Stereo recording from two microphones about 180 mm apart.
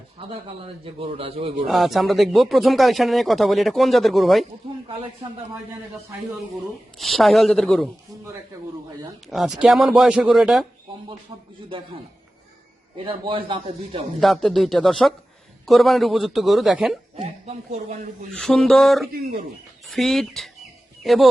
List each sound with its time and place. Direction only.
0.9 s a man's voice: 30° right (ahead or behind)
1.6 s speech: centre (ahead or behind)
7.0 s speech: centre (ahead or behind)
9.3 s speech: centre (ahead or behind)
13.1 s a man's voice: 30° right (ahead or behind)
14.2 s speech: centre (ahead or behind)
17.2 s a man's voice: 40° right (ahead or behind)
18.3 s speech: centre (ahead or behind)